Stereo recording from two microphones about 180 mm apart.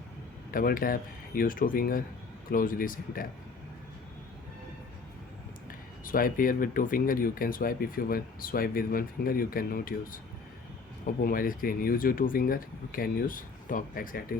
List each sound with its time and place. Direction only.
0.5 s speech: 50° left (ahead or behind)
6.1 s speech: 50° left (ahead or behind)